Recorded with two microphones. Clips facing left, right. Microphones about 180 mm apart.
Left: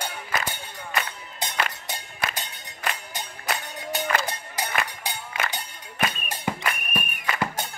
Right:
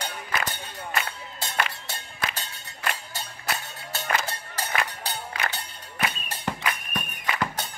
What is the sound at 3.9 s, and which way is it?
Music, 15° left (ahead or behind).